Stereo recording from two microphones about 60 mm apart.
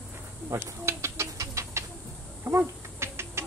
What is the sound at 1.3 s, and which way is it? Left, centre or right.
Bird, right.